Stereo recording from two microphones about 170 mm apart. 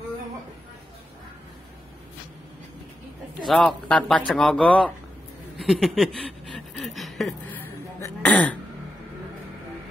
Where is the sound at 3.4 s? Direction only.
5° left (ahead or behind).